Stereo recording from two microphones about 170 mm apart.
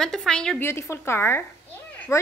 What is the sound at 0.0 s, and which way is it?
Speech, 5° left (ahead or behind).